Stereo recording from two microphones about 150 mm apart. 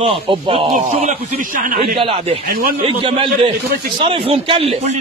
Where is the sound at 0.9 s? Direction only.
50° right (ahead or behind); by 2.0 s 75° right (ahead or behind).